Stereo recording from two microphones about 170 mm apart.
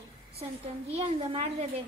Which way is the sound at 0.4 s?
35° right (ahead or behind).